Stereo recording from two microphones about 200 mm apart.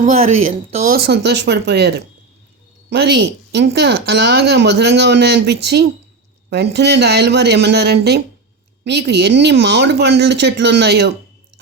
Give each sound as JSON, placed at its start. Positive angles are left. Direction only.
{"t": 0.0, "sound": "speech", "side_deg": -35}
{"t": 0.9, "sound": "a woman's voice", "side_deg": -55}